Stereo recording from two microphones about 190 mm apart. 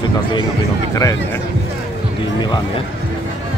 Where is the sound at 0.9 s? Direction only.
15° left (ahead or behind).